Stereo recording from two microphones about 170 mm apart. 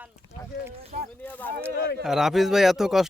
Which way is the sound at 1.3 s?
10° left (ahead or behind).